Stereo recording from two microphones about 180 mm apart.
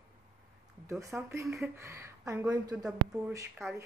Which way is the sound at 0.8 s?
15° right (ahead or behind).